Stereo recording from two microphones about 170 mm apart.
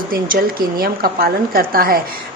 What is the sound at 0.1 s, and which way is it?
A woman's voice, 55° right (ahead or behind).